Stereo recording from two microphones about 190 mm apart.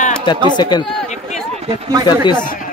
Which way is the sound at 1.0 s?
40° left (ahead or behind).